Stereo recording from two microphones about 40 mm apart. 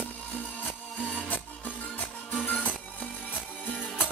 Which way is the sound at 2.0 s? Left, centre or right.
Left.